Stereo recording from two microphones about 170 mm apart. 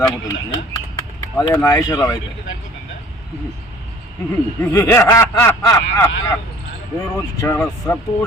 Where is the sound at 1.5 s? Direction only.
20° left (ahead or behind).